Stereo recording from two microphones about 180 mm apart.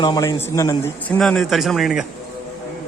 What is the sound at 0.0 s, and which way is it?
A man's voice, 20° left (ahead or behind).